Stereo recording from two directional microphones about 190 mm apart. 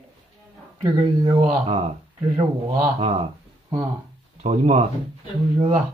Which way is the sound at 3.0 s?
30° right (ahead or behind).